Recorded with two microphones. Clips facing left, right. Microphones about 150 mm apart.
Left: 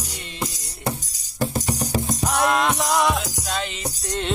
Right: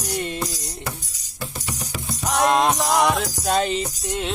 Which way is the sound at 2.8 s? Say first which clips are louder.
Right 1 dB; centre (ahead or behind).